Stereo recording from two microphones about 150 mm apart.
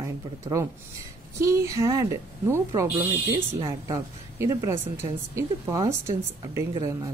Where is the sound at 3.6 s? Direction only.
20° right (ahead or behind).